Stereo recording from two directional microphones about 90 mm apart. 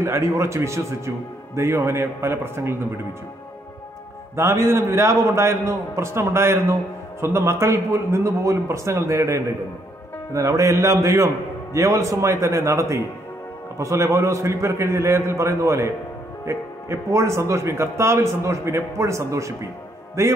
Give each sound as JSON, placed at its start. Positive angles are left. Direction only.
{"t": 0.0, "sound": "a man's voice", "side_deg": -30}
{"t": 4.4, "sound": "a man's voice", "side_deg": -30}